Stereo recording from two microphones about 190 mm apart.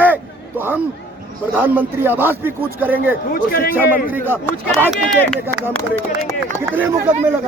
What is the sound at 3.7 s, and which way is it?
A man's voice, 10° right (ahead or behind).